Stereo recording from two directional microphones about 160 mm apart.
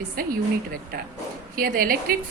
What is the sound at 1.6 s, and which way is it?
Speech, 65° right (ahead or behind).